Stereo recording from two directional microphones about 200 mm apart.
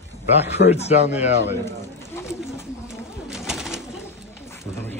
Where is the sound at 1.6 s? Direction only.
15° left (ahead or behind).